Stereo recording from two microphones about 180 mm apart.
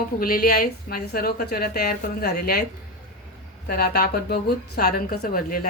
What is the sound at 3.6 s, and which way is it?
Speech, 60° left (ahead or behind).